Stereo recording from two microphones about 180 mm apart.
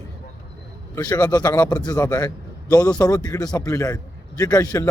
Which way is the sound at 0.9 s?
20° left (ahead or behind).